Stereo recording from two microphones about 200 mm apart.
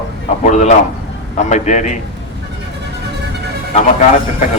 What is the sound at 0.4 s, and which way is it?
A man's voice, 35° left (ahead or behind).